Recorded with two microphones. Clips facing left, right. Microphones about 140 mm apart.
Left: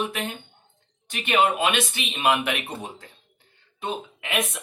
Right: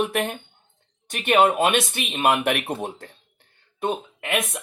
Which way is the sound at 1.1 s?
45° right (ahead or behind).